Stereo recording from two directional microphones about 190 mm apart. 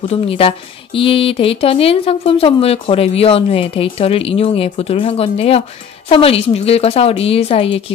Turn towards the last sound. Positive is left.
turn(degrees=30)  # may be behind; listen again after turning